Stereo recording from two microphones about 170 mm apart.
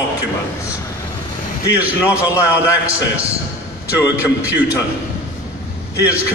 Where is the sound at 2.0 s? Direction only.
15° left (ahead or behind).